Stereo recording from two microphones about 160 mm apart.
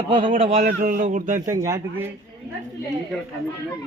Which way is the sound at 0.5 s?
65° right (ahead or behind).